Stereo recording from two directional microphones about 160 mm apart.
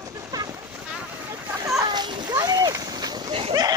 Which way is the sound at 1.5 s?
20° right (ahead or behind).